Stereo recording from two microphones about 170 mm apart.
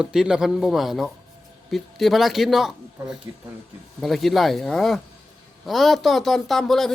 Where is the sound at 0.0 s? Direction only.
5° right (ahead or behind).